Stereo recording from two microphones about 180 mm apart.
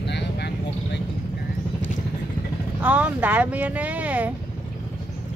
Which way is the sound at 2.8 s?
10° right (ahead or behind).